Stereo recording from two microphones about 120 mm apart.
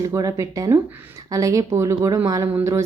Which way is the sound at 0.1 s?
25° right (ahead or behind).